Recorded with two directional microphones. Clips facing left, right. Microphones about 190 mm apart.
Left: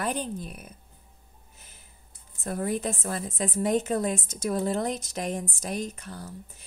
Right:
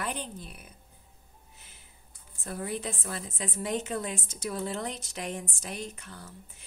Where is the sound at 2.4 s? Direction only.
45° left (ahead or behind).